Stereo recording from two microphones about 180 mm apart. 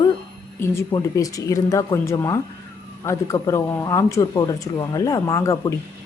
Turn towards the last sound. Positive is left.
turn(degrees=15)  # may be behind; listen again after turning